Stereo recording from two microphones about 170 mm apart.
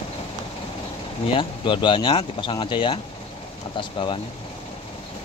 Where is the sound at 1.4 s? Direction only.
30° left (ahead or behind).